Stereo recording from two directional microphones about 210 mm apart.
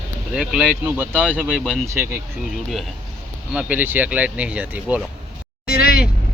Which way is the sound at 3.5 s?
10° right (ahead or behind).